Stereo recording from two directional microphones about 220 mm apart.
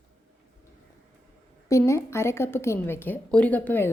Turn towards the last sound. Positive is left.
turn(degrees=10)  # may be behind; listen again after turning